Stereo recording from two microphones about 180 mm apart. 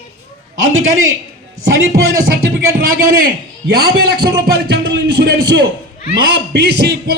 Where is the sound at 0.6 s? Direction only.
90° right.